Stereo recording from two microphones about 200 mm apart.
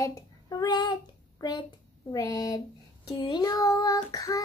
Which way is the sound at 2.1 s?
20° left (ahead or behind).